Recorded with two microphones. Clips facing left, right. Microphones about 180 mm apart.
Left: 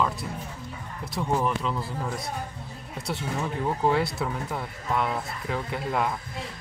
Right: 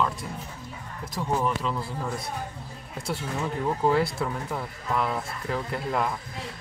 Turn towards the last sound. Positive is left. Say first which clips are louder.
# even
turn(degrees=0)  # may be behind; listen again after turning